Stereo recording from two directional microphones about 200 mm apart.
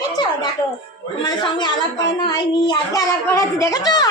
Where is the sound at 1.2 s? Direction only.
20° left (ahead or behind).